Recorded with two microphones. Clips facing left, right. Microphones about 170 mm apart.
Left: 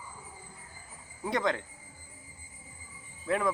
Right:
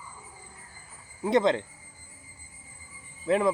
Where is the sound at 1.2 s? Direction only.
20° right (ahead or behind).